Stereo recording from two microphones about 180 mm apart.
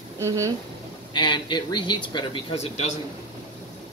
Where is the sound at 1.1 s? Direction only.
25° left (ahead or behind).